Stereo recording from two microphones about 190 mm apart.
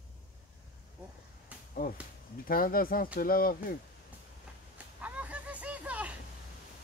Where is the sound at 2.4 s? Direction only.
50° left (ahead or behind).